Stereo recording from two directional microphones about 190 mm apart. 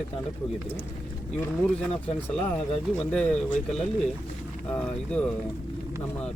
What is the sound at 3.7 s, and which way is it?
Speech, 5° left (ahead or behind).